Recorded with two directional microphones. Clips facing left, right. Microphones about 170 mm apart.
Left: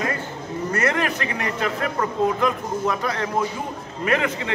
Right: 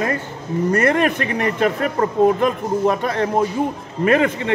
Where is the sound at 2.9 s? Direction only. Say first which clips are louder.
Right 3 dB; 30° right (ahead or behind).